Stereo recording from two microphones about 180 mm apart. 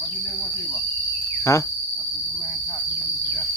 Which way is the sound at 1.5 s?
15° left (ahead or behind).